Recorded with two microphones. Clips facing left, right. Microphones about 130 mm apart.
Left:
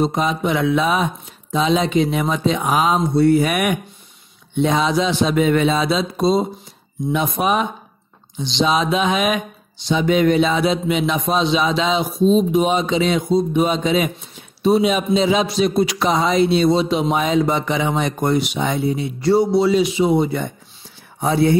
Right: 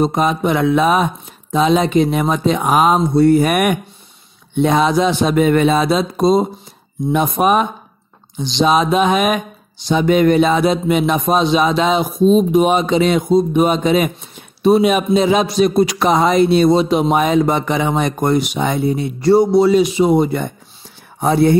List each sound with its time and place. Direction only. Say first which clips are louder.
0.0 s a man's voice: right 3 dB; 50° right (ahead or behind)